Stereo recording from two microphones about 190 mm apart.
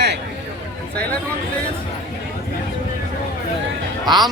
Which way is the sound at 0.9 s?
5° left (ahead or behind).